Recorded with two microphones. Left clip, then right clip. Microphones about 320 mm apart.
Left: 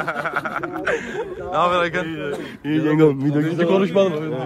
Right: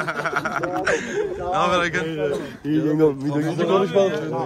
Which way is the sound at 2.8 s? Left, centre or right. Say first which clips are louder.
Left 3 dB; left.